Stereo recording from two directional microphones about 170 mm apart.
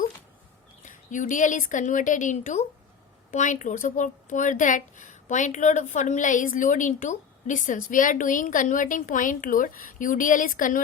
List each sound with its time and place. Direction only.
0.9 s speech: 50° left (ahead or behind)